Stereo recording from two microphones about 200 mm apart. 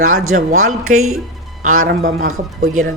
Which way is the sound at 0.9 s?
90° right.